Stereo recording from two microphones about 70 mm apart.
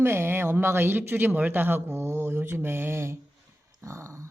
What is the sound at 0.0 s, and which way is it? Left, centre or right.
A man's voice, right.